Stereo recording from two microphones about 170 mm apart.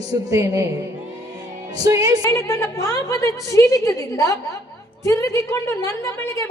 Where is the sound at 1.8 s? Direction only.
20° right (ahead or behind).